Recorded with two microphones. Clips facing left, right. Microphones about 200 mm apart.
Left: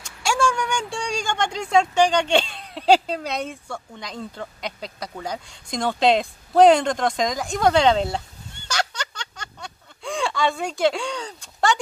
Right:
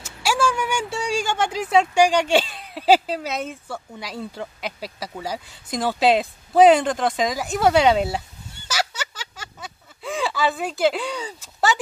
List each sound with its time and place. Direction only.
0.0 s speech: 5° right (ahead or behind)